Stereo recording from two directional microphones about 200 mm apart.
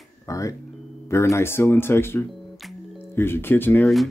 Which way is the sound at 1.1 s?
15° left (ahead or behind).